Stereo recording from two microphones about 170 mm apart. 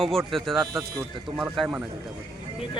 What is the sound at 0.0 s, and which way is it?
Speech, centre (ahead or behind).